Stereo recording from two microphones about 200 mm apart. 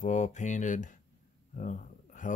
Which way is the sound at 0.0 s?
35° left (ahead or behind).